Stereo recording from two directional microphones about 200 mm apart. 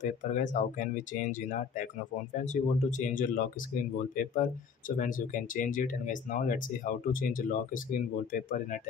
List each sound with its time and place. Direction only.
0.0 s speech: 40° left (ahead or behind)